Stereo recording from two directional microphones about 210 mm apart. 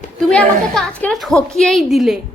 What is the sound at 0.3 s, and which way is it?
A woman's voice, 5° left (ahead or behind).